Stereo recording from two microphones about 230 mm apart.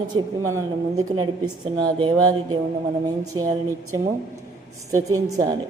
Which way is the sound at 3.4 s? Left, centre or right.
Centre.